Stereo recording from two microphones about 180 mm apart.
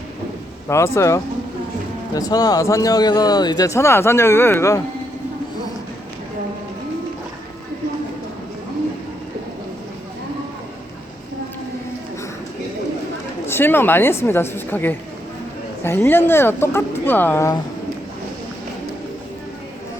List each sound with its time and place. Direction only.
0.7 s speech: 15° left (ahead or behind)
13.5 s speech: 10° left (ahead or behind)